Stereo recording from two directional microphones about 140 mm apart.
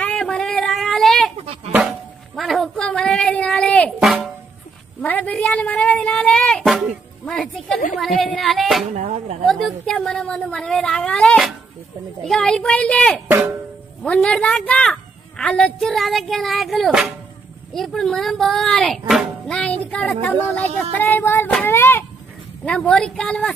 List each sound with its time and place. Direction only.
0.0 s a sound: 5° left (ahead or behind)
1.4 s a child's voice: 50° right (ahead or behind)
1.7 s a sound: 5° right (ahead or behind)
5.0 s a woman's voice: 10° left (ahead or behind)
8.9 s speech: 55° right (ahead or behind)
9.5 s speech: centre (ahead or behind)
13.3 s drum: 15° right (ahead or behind)
14.0 s a woman's voice: 5° left (ahead or behind)
22.7 s a woman's voice: 5° left (ahead or behind)